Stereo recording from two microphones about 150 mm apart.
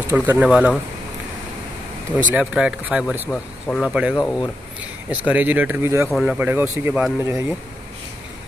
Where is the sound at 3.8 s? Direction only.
10° right (ahead or behind).